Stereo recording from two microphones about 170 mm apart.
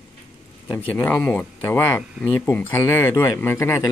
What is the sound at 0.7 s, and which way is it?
Speech, 15° left (ahead or behind).